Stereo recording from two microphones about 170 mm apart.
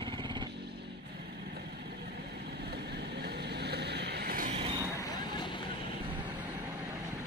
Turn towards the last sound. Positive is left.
turn(degrees=25)  # may be behind; listen again after turning